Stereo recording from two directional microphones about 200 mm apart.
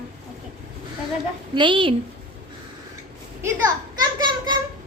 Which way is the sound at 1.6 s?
25° right (ahead or behind).